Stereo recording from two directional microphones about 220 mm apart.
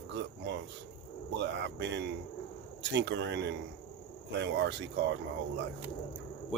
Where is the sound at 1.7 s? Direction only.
55° right (ahead or behind).